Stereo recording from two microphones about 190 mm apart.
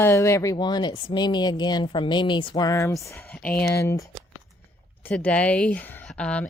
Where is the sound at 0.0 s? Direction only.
15° left (ahead or behind).